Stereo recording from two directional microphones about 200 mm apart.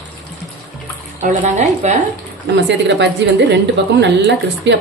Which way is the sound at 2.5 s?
60° right (ahead or behind).